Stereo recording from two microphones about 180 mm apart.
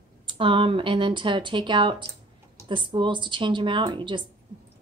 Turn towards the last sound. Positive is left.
turn(degrees=-25)  # may be behind; listen again after turning